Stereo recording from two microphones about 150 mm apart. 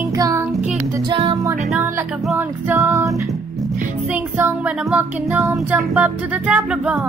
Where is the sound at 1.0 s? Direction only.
35° right (ahead or behind).